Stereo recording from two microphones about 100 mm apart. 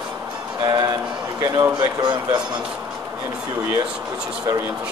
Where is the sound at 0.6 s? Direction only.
45° right (ahead or behind).